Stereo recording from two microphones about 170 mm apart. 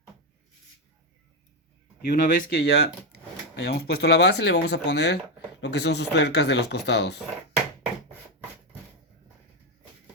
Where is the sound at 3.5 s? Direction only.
85° left.